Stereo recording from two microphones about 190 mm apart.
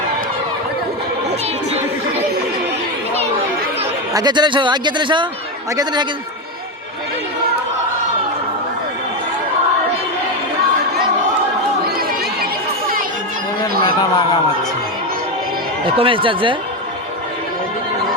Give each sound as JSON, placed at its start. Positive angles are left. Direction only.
{"t": 4.1, "sound": "a man's voice", "side_deg": -20}
{"t": 15.9, "sound": "a man's voice", "side_deg": -25}